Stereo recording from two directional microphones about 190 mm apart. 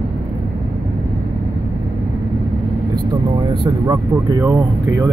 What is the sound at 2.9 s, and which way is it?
Speech, 20° right (ahead or behind).